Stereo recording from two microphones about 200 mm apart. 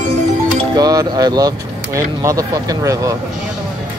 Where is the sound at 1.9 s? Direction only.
15° right (ahead or behind).